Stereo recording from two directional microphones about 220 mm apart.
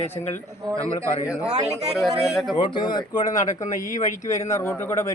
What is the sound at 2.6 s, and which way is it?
Speech, 20° left (ahead or behind).